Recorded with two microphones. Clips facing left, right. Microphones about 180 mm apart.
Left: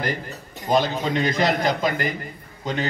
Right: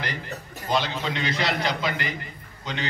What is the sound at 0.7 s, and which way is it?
A man's voice, 45° left (ahead or behind).